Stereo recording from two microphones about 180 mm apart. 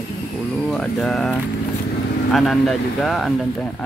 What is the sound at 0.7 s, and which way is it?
Speech, centre (ahead or behind).